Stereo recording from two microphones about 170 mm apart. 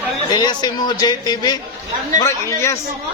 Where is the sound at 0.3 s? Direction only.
25° left (ahead or behind).